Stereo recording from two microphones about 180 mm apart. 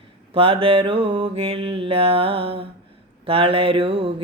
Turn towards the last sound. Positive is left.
turn(degrees=-30)  # may be behind; listen again after turning